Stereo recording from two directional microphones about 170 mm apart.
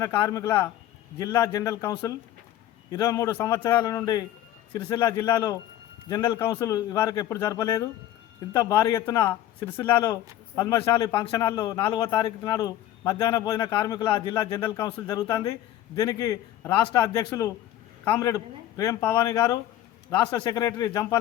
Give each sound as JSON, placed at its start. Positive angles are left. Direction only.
{"t": 0.2, "sound": "a man's voice", "side_deg": 20}
{"t": 3.8, "sound": "a man's voice", "side_deg": 25}
{"t": 10.5, "sound": "a man's voice", "side_deg": 20}
{"t": 11.1, "sound": "a man's voice", "side_deg": 30}